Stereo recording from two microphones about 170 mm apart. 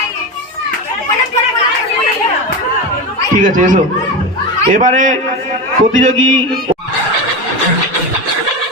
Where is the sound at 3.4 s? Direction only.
50° right (ahead or behind).